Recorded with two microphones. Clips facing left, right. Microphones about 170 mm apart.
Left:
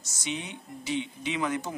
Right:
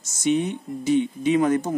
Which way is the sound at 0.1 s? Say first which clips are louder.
Right 14 dB; 50° right (ahead or behind).